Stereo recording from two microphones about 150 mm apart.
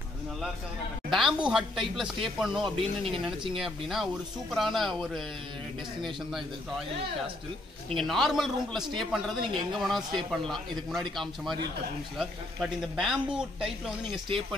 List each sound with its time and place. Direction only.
1.1 s a man's voice: centre (ahead or behind)
7.9 s a man's voice: centre (ahead or behind)
12.2 s a man's voice: centre (ahead or behind)